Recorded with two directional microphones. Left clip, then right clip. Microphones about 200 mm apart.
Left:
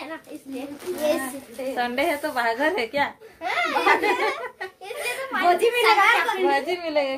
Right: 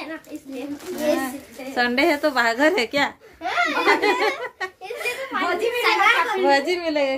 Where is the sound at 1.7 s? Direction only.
50° right (ahead or behind).